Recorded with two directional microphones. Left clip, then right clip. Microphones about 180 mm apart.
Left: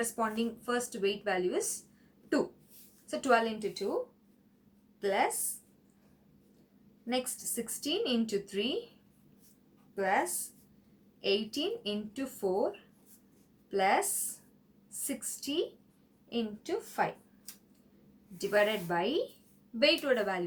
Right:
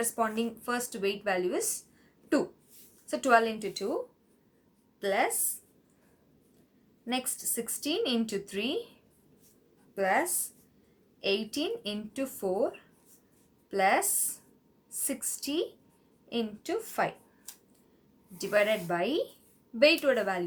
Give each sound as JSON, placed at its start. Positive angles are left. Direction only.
{"t": 0.0, "sound": "a woman's voice", "side_deg": -30}
{"t": 3.1, "sound": "a woman's voice", "side_deg": -30}
{"t": 4.9, "sound": "a woman's voice", "side_deg": -30}
{"t": 7.0, "sound": "a woman's voice", "side_deg": -25}
{"t": 9.9, "sound": "a woman's voice", "side_deg": -30}
{"t": 13.7, "sound": "speech", "side_deg": -25}
{"t": 15.0, "sound": "a woman's voice", "side_deg": -30}
{"t": 18.3, "sound": "a woman's voice", "side_deg": -25}